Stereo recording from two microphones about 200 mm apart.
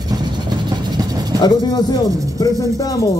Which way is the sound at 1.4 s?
20° left (ahead or behind).